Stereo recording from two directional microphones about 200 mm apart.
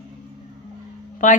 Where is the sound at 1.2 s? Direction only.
40° left (ahead or behind).